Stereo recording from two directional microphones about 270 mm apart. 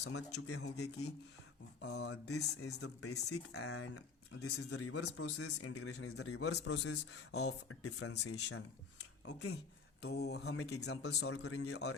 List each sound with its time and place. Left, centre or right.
0.0 s speech: left
3.0 s speech: left
4.8 s a man's voice: left
10.0 s speech: left
11.4 s speech: left